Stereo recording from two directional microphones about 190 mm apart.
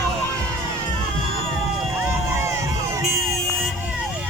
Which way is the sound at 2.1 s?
15° right (ahead or behind).